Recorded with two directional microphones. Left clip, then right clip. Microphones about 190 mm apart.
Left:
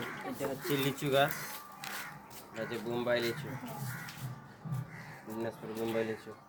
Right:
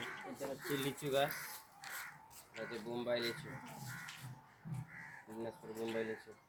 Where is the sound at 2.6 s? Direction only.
5° right (ahead or behind).